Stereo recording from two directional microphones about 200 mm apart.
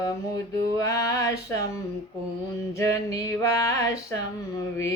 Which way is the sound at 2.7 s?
15° left (ahead or behind).